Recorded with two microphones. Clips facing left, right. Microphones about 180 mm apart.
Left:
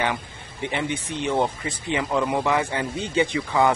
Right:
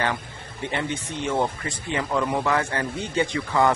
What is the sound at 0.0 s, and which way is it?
A man's voice, 15° left (ahead or behind).